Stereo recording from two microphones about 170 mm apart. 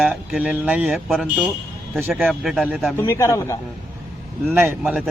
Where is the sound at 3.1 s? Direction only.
15° left (ahead or behind).